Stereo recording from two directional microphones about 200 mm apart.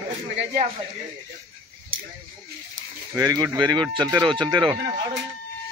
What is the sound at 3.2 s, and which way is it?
Speech, 15° right (ahead or behind).